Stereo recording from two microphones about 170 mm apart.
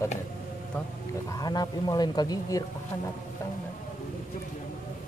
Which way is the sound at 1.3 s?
25° left (ahead or behind).